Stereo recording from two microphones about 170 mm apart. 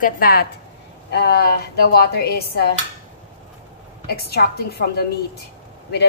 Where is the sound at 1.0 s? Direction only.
80° left.